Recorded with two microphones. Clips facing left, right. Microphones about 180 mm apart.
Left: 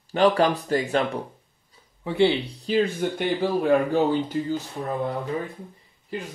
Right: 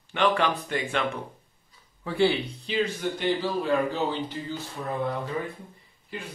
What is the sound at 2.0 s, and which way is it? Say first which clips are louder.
Speech: left 3 dB; 20° left (ahead or behind).